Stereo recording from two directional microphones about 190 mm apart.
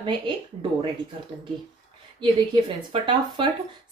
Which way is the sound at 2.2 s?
25° right (ahead or behind).